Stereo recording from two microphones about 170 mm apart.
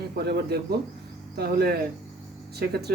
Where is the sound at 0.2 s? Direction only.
70° right (ahead or behind).